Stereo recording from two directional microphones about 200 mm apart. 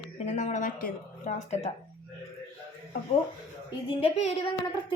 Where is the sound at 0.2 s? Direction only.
35° left (ahead or behind).